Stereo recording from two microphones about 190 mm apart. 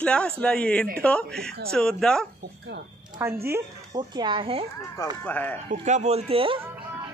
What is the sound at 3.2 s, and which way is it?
Speech, 10° right (ahead or behind).